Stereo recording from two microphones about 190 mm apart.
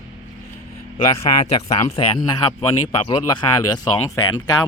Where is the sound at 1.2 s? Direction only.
35° left (ahead or behind).